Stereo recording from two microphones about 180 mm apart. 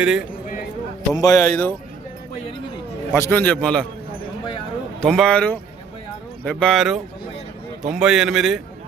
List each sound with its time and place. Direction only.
0.0 s a man's voice: 5° right (ahead or behind)
1.1 s a man's voice: 20° left (ahead or behind)
3.1 s a man's voice: 15° left (ahead or behind)
4.9 s a man's voice: centre (ahead or behind)